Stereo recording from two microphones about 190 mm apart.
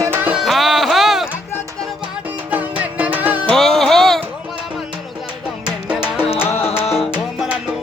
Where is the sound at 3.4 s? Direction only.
Centre (ahead or behind).